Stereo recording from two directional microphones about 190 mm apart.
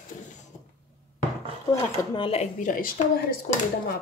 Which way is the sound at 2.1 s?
30° left (ahead or behind).